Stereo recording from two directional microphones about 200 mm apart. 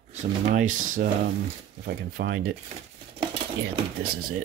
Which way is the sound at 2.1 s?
45° right (ahead or behind).